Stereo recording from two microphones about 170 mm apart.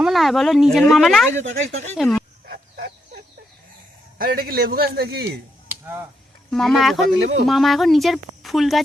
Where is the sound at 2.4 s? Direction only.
65° right (ahead or behind).